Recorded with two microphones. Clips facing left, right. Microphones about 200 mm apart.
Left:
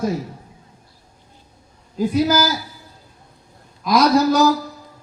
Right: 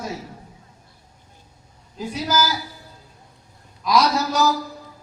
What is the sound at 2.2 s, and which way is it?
Speech, 55° left (ahead or behind).